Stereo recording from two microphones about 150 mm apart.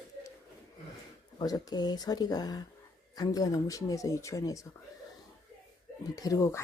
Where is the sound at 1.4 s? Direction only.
25° left (ahead or behind).